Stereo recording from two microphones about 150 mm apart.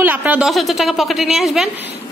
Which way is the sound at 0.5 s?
Centre (ahead or behind).